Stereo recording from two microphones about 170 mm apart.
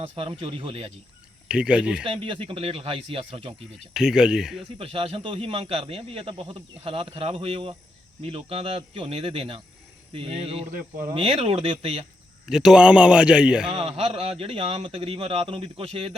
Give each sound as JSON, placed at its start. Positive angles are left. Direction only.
{"t": 0.0, "sound": "a man's voice", "side_deg": -35}
{"t": 1.5, "sound": "a man's voice", "side_deg": -5}
{"t": 2.0, "sound": "a man's voice", "side_deg": -30}
{"t": 3.9, "sound": "a man's voice", "side_deg": -5}
{"t": 4.8, "sound": "a man's voice", "side_deg": -35}
{"t": 10.7, "sound": "speech", "side_deg": -55}
{"t": 11.1, "sound": "a man's voice", "side_deg": -35}
{"t": 12.5, "sound": "a man's voice", "side_deg": -5}
{"t": 13.7, "sound": "a man's voice", "side_deg": -35}